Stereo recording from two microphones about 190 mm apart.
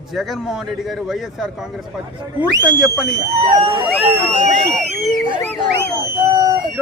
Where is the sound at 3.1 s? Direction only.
30° right (ahead or behind).